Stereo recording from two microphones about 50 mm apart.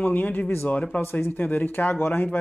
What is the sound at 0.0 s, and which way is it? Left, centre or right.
Speech, left.